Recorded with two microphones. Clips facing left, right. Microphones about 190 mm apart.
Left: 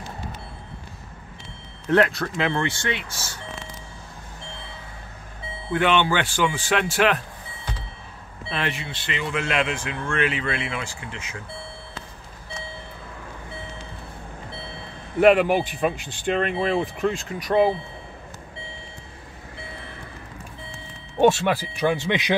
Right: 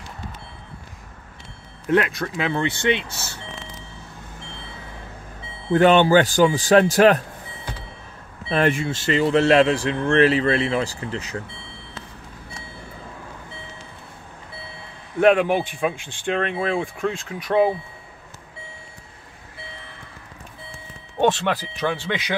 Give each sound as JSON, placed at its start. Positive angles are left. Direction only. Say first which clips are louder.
{"t": 1.9, "sound": "speech", "louder": "left 1 dB", "side_deg": -15}
{"t": 5.7, "sound": "speech", "louder": "right 6 dB", "side_deg": -40}
{"t": 8.5, "sound": "speech", "louder": "right 9 dB", "side_deg": -45}
{"t": 15.1, "sound": "speech", "louder": "even", "side_deg": 5}
{"t": 21.2, "sound": "speech", "louder": "left 2 dB", "side_deg": 5}